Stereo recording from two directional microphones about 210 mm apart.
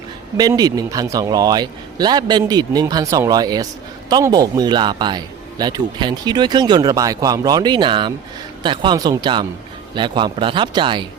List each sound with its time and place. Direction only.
0.3 s speech: 20° right (ahead or behind)